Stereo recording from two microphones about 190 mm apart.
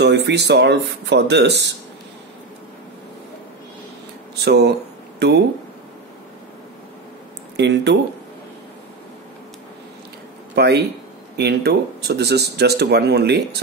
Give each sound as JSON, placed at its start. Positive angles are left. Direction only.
{"t": 0.0, "sound": "speech", "side_deg": -65}
{"t": 4.5, "sound": "speech", "side_deg": -60}
{"t": 7.5, "sound": "speech", "side_deg": -65}
{"t": 10.5, "sound": "speech", "side_deg": -60}